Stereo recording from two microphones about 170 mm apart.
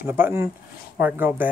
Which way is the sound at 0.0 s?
15° right (ahead or behind).